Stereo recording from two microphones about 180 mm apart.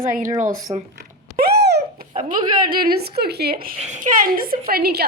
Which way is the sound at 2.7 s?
60° right (ahead or behind).